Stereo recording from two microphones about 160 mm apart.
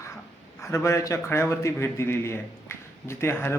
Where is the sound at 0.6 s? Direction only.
20° left (ahead or behind).